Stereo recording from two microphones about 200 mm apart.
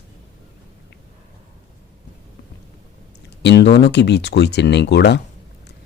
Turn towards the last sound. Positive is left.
turn(degrees=55)  # may be behind; listen again after turning